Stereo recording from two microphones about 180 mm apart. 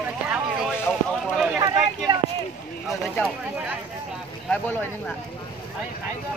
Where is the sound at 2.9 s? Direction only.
Centre (ahead or behind).